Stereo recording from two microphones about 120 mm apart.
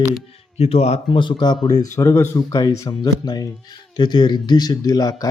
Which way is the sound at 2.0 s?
25° left (ahead or behind).